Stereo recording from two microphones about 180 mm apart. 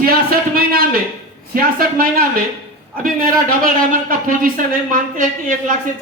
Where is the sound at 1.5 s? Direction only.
55° right (ahead or behind).